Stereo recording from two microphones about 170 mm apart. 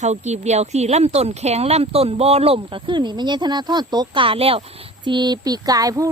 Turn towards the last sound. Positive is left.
turn(degrees=-20)  # may be behind; listen again after turning